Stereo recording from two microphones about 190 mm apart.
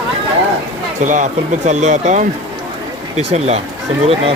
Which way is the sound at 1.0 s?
40° right (ahead or behind).